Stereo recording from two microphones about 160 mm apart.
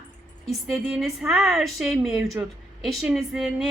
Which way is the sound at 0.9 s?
Centre (ahead or behind).